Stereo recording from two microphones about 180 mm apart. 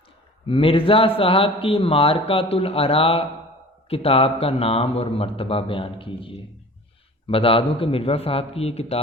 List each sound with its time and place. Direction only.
0.4 s a man's voice: 30° left (ahead or behind)